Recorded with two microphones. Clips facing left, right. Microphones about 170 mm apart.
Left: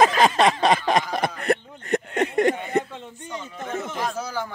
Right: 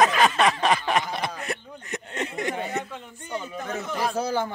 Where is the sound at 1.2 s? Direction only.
55° left (ahead or behind).